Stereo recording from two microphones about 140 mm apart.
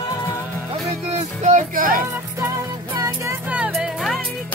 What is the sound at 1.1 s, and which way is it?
Music, 55° right (ahead or behind).